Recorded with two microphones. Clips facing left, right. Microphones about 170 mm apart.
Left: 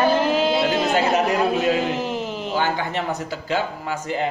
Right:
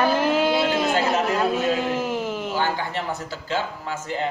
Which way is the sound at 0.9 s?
15° left (ahead or behind).